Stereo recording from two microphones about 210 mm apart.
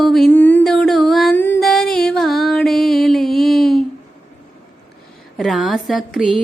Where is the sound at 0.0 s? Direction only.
Centre (ahead or behind).